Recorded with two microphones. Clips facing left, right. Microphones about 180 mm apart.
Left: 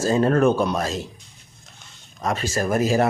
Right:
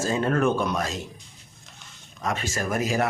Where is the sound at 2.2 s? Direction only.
35° left (ahead or behind).